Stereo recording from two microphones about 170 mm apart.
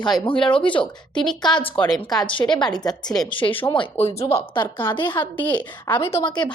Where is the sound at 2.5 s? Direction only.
25° left (ahead or behind).